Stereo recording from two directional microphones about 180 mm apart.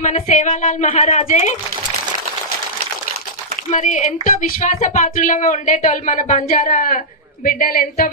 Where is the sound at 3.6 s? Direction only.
40° left (ahead or behind).